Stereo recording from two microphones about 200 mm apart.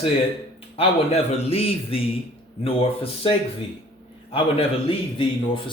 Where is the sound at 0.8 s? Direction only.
30° left (ahead or behind).